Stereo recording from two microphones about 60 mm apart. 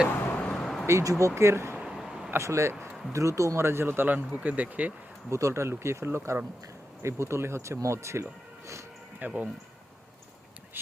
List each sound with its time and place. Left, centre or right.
0.3 s vehicle: centre
0.9 s speech: right
1.8 s a sound: centre
2.4 s speech: right
4.3 s speech: right
5.3 s speech: right
9.1 s speech: right